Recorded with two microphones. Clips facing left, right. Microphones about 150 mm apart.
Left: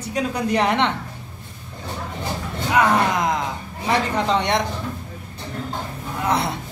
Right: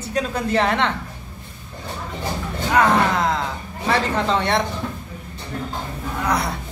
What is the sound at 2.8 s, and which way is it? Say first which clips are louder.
A woman's voice: right 1 dB; 10° left (ahead or behind).